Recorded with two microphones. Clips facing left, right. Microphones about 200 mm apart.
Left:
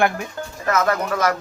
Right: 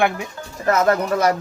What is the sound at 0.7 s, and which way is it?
Speech, 30° right (ahead or behind).